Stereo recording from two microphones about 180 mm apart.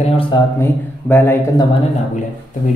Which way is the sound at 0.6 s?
10° left (ahead or behind).